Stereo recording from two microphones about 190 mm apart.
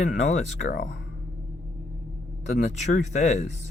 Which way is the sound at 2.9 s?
40° left (ahead or behind).